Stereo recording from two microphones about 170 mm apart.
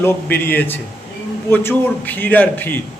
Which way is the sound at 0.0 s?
10° left (ahead or behind).